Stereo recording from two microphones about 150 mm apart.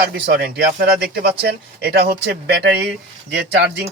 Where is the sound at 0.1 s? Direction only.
90° right.